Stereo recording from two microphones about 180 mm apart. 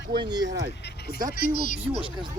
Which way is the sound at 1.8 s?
30° right (ahead or behind).